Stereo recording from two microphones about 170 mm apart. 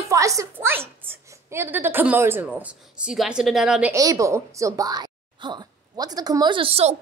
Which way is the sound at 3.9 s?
20° right (ahead or behind).